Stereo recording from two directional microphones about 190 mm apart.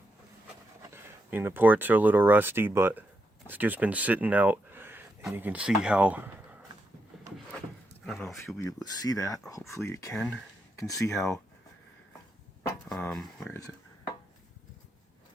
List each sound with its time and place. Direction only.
0.8 s speech: 10° right (ahead or behind)
8.0 s speech: 5° left (ahead or behind)
8.5 s speech: 20° left (ahead or behind)
10.2 s speech: 5° left (ahead or behind)
10.8 s speech: 15° left (ahead or behind)
12.9 s speech: centre (ahead or behind)